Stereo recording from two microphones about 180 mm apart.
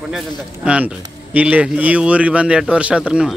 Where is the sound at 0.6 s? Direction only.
5° right (ahead or behind).